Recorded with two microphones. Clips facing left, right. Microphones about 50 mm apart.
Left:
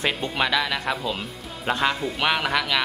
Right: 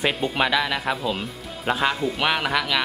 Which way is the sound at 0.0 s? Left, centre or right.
Centre.